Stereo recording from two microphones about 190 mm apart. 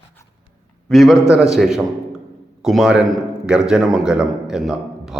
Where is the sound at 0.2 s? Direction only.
15° left (ahead or behind).